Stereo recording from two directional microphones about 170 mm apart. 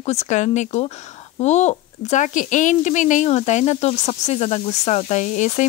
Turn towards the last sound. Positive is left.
turn(degrees=45)  # may be behind; listen again after turning